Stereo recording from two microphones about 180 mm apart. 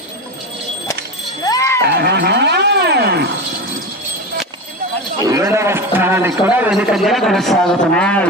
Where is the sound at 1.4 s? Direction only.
20° left (ahead or behind).